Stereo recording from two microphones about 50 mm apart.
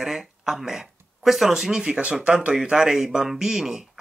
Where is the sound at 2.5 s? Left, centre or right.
Centre.